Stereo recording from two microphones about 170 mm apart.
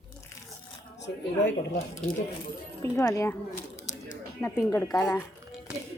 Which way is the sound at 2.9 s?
20° left (ahead or behind).